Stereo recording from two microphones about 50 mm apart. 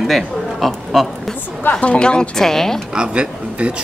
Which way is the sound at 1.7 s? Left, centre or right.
Left.